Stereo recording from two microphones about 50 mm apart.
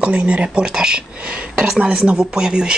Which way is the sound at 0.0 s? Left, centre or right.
Right.